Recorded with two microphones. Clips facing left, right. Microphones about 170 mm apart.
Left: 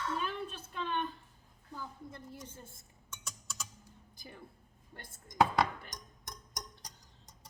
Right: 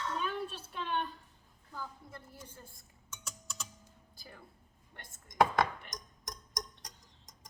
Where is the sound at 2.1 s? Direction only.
20° left (ahead or behind).